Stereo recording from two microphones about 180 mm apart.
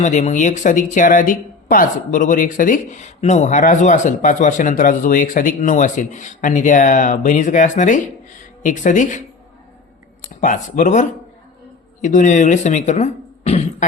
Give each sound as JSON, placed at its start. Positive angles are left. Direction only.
{"t": 0.0, "sound": "speech", "side_deg": 40}
{"t": 10.4, "sound": "speech", "side_deg": 45}
{"t": 12.0, "sound": "speech", "side_deg": 45}